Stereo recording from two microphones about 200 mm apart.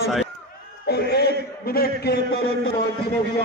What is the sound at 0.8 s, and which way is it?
A man's voice, 55° left (ahead or behind).